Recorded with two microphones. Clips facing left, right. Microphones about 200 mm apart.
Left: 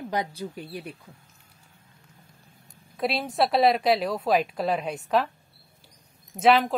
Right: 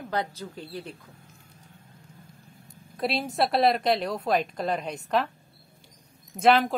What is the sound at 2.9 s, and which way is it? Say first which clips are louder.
A woman's voice: left 1 dB; centre (ahead or behind).